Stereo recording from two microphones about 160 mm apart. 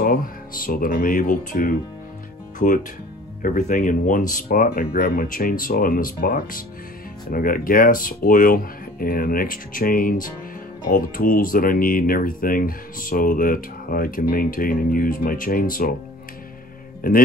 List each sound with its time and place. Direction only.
0.0 s speech: 65° left (ahead or behind)
17.0 s speech: 60° left (ahead or behind)